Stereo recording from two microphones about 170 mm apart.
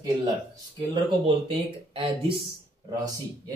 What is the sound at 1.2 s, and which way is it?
Speech, 35° right (ahead or behind).